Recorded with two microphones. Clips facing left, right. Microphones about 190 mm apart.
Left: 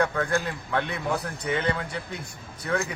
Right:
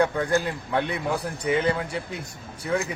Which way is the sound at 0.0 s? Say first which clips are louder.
Right 3 dB; 15° right (ahead or behind).